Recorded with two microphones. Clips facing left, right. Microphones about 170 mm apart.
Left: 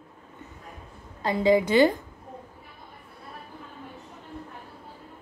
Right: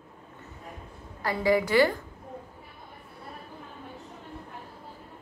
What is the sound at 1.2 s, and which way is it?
Speech, 20° left (ahead or behind).